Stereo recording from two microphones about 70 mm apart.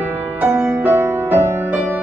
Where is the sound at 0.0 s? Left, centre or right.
Right.